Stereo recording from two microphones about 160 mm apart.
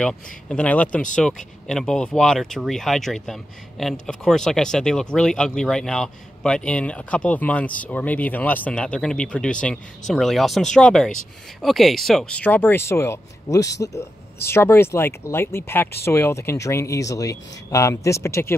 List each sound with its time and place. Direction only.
0.0 s speech: 5° left (ahead or behind)